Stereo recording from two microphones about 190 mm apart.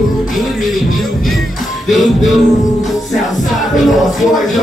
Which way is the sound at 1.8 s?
Centre (ahead or behind).